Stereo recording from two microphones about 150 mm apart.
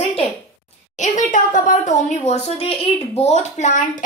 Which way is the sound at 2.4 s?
40° left (ahead or behind).